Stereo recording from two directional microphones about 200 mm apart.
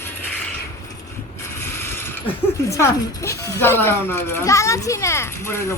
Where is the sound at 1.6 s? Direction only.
10° left (ahead or behind).